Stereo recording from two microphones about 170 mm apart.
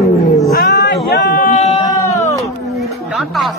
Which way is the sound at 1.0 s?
60° left (ahead or behind).